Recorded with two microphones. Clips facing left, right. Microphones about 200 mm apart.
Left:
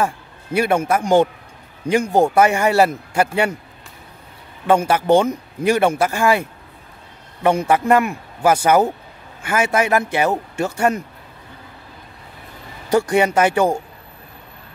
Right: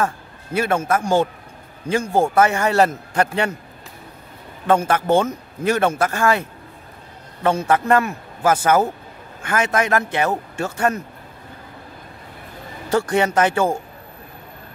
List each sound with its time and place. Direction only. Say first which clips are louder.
0.0 s a man's voice: left 1 dB; 10° left (ahead or behind)
4.6 s a man's voice: left 2 dB; 10° left (ahead or behind)
7.4 s a man's voice: left 2 dB; 15° left (ahead or behind)
12.9 s a man's voice: left 2 dB; 10° left (ahead or behind)